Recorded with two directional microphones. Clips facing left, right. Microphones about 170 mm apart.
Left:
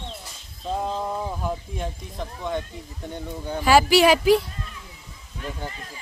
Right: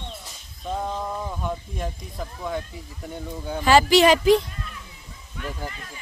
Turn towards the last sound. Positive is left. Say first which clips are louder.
# right 1 dB
turn(degrees=30)  # may be behind; listen again after turning